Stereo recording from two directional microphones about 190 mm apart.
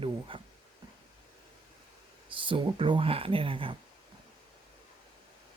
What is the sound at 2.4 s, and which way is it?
Speech, 25° right (ahead or behind).